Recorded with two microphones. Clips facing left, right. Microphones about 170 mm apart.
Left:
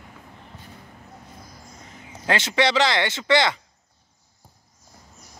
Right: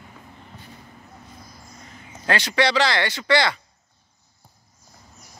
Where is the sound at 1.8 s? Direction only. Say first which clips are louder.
Even; 20° left (ahead or behind).